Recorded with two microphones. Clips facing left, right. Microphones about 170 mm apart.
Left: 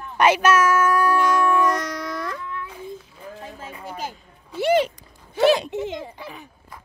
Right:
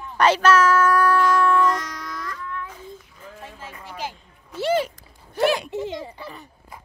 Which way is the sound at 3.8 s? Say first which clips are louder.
Left 1 dB; 45° left (ahead or behind).